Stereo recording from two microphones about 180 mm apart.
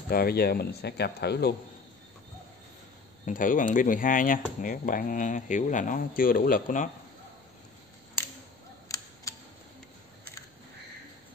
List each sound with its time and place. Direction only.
0.1 s speech: 60° left (ahead or behind)
3.3 s speech: 45° left (ahead or behind)
8.8 s camera: 20° left (ahead or behind)